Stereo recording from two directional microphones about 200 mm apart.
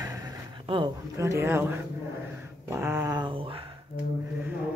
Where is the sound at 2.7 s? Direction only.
10° right (ahead or behind).